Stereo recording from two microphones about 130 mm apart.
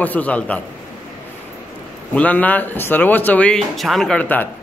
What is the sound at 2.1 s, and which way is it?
A man's voice, 10° left (ahead or behind).